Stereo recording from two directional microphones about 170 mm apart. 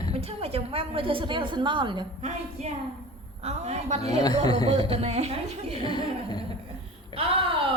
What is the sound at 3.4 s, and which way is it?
A woman's voice, 40° right (ahead or behind).